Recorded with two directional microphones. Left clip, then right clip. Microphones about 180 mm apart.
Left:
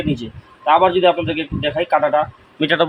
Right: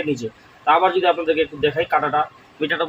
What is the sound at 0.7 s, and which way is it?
Speech, 50° left (ahead or behind).